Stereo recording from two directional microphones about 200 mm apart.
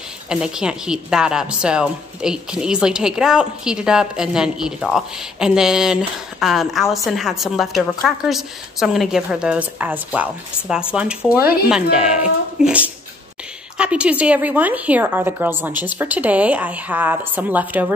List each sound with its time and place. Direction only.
0.3 s a woman's voice: 5° right (ahead or behind)